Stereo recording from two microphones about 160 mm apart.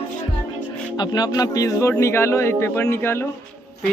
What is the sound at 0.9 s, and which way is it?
Speech, 25° left (ahead or behind).